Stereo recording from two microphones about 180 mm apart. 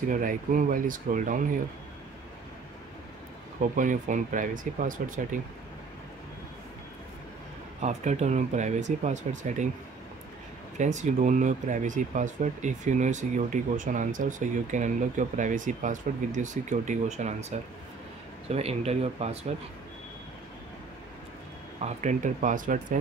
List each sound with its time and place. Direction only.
0.1 s speech: 50° right (ahead or behind)
3.7 s speech: 45° right (ahead or behind)
7.8 s speech: 40° right (ahead or behind)
10.8 s speech: 40° right (ahead or behind)
21.8 s speech: 45° right (ahead or behind)